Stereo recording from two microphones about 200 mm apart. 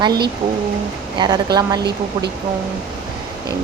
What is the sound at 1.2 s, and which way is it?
Speech, 20° right (ahead or behind).